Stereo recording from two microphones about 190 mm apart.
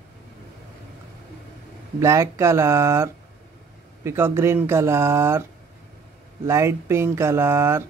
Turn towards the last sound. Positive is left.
turn(degrees=-15)  # may be behind; listen again after turning